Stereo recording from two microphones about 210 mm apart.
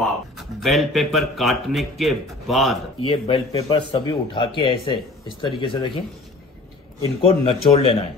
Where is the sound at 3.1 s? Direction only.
25° left (ahead or behind).